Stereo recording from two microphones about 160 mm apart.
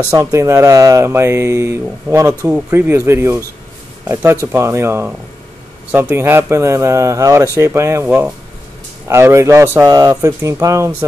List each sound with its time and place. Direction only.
0.1 s speech: 20° right (ahead or behind)